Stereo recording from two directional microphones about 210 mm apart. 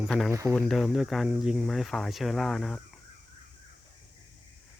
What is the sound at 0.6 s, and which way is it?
Speech, centre (ahead or behind).